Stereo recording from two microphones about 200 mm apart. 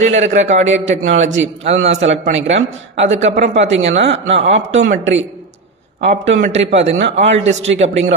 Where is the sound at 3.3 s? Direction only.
35° right (ahead or behind).